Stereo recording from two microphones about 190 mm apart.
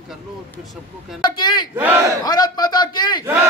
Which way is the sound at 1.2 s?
20° left (ahead or behind).